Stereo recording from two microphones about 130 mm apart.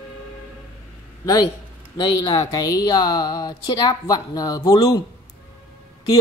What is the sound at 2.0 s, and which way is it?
Speech, 30° left (ahead or behind).